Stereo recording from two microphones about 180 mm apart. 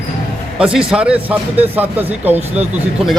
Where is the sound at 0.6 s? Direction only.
5° right (ahead or behind).